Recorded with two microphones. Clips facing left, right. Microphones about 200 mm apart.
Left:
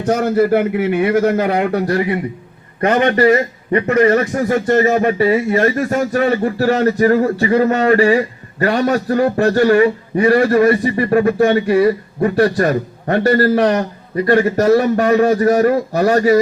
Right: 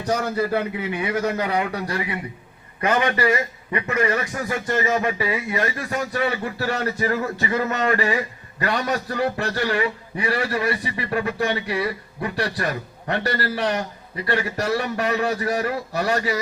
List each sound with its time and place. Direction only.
0.0 s a man's voice: 55° left (ahead or behind)